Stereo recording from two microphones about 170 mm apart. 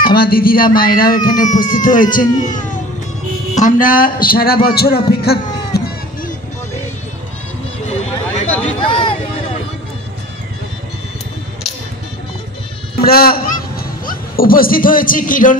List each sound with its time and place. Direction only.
0.0 s a man's voice: 60° left (ahead or behind)
8.5 s a sound: 30° left (ahead or behind)
13.0 s speech: 60° left (ahead or behind)